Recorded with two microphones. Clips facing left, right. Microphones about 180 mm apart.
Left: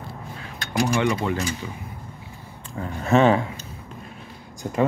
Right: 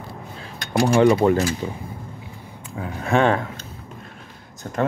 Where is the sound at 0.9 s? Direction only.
35° right (ahead or behind).